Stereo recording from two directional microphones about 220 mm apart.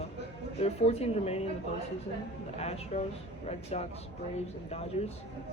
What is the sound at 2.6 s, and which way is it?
Speech, 30° left (ahead or behind).